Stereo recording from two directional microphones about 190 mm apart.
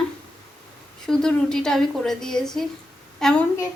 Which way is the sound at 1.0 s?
5° left (ahead or behind).